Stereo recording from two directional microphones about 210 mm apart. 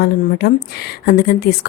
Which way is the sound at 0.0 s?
50° left (ahead or behind).